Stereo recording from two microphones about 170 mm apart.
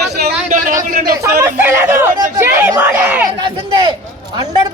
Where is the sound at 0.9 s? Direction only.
60° right (ahead or behind).